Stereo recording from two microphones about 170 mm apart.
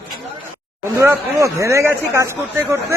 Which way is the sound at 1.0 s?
15° right (ahead or behind).